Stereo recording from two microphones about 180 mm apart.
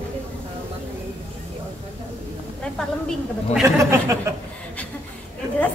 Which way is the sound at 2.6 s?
5° left (ahead or behind).